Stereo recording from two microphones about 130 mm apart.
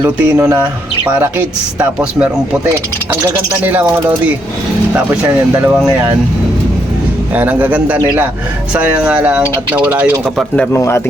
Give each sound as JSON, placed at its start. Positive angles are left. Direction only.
{"t": 0.0, "sound": "speech", "side_deg": -20}
{"t": 5.6, "sound": "speech", "side_deg": -10}
{"t": 7.3, "sound": "speech", "side_deg": -10}
{"t": 10.2, "sound": "speech", "side_deg": 0}
{"t": 10.8, "sound": "speech", "side_deg": 20}